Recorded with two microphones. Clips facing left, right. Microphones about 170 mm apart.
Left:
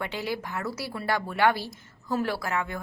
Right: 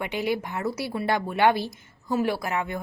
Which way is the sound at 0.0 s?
15° right (ahead or behind).